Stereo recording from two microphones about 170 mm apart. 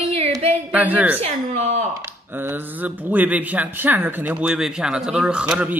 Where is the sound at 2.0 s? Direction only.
15° right (ahead or behind).